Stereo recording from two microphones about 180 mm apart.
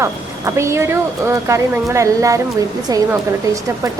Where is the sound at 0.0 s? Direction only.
15° right (ahead or behind).